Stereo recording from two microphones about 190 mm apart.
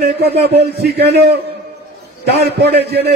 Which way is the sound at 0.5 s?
60° right (ahead or behind).